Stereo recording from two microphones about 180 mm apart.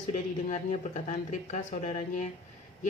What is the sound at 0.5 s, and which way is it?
A woman's voice, 40° left (ahead or behind).